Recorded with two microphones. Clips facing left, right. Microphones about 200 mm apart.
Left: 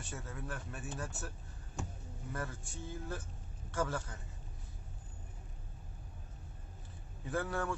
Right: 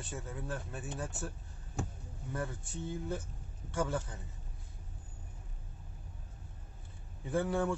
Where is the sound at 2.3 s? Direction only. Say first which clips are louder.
Right 4 dB; 20° right (ahead or behind).